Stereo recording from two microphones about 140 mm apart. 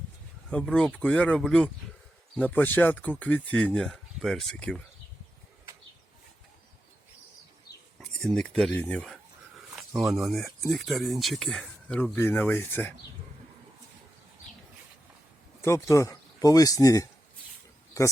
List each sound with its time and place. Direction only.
0.5 s speech: 5° left (ahead or behind)
7.9 s speech: centre (ahead or behind)
9.7 s a sound: centre (ahead or behind)
10.2 s speech: centre (ahead or behind); by 12.9 s 15° left (ahead or behind)
15.6 s a man's voice: 20° left (ahead or behind)